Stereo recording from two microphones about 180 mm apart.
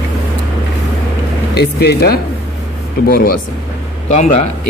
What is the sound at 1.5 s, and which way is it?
Speech, 65° left (ahead or behind).